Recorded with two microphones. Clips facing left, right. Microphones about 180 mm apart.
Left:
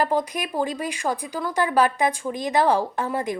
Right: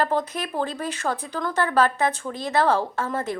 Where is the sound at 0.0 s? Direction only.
10° left (ahead or behind).